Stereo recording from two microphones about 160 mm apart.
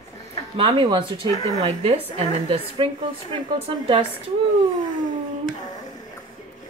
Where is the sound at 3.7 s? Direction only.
30° right (ahead or behind).